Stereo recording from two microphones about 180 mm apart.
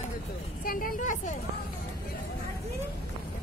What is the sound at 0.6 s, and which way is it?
Vehicle, 50° left (ahead or behind).